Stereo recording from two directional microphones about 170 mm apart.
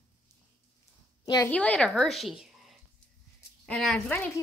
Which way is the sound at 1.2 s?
20° left (ahead or behind).